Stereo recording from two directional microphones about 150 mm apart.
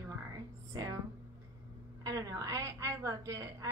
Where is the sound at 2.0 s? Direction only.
25° right (ahead or behind).